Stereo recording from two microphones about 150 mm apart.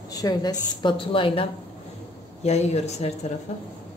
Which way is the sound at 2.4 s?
45° left (ahead or behind).